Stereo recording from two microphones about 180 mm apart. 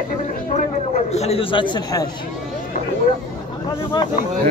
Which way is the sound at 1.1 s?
35° left (ahead or behind).